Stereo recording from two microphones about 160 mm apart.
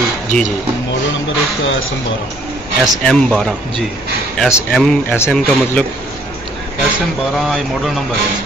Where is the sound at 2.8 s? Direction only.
5° left (ahead or behind).